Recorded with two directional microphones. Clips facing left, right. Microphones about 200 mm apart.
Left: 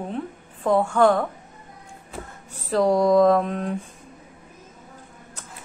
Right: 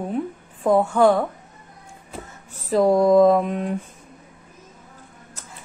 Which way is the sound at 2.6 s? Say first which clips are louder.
Right 2 dB; 5° right (ahead or behind).